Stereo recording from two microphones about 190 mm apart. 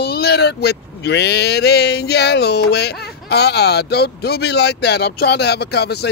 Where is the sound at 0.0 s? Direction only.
55° left (ahead or behind).